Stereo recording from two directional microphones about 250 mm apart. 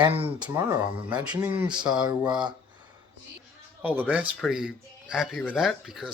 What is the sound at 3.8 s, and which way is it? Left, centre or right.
Speech, centre.